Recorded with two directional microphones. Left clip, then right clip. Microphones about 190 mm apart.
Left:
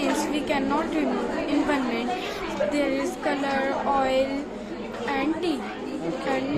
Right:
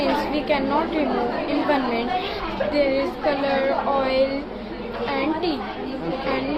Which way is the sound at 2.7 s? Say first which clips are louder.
Right 5 dB; 70° left (ahead or behind).